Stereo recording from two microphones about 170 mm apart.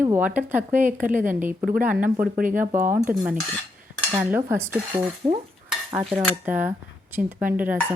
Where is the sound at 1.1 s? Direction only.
50° right (ahead or behind).